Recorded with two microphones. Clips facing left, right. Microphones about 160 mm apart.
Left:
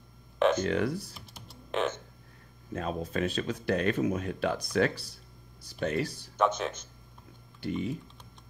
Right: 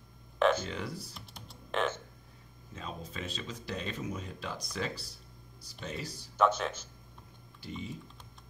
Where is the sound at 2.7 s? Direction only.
60° left (ahead or behind).